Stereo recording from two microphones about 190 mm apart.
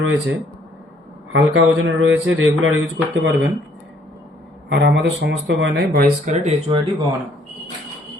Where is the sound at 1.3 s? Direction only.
85° right.